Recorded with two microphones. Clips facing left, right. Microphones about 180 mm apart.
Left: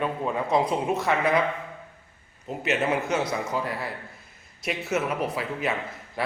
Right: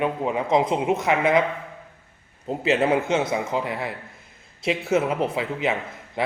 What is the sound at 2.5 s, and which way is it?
A man's voice, 30° right (ahead or behind).